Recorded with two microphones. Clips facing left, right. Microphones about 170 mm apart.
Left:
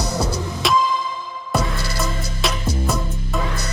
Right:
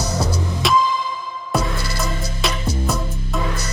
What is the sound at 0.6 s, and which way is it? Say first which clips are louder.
Music: right 1 dB; centre (ahead or behind).